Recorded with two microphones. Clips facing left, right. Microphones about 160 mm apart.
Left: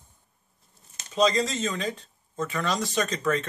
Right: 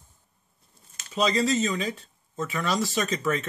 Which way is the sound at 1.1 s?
5° right (ahead or behind).